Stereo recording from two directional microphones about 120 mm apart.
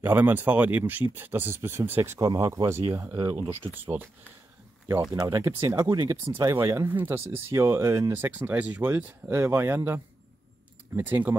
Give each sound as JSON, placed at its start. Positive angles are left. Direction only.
{"t": 0.0, "sound": "speech", "side_deg": -15}
{"t": 2.1, "sound": "speech", "side_deg": -30}
{"t": 5.2, "sound": "speech", "side_deg": -20}
{"t": 5.8, "sound": "speech", "side_deg": -35}
{"t": 6.3, "sound": "speech", "side_deg": -20}